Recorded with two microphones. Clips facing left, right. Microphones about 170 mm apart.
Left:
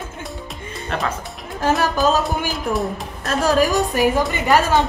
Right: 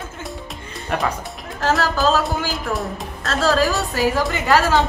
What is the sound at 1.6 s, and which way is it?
Speech, 20° left (ahead or behind).